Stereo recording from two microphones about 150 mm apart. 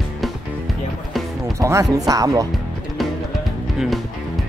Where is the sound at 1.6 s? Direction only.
20° right (ahead or behind).